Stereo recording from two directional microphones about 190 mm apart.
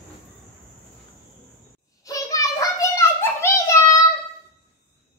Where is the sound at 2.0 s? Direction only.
20° left (ahead or behind).